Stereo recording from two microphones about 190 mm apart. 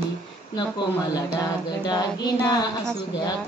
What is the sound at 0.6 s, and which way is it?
Speech, 20° left (ahead or behind).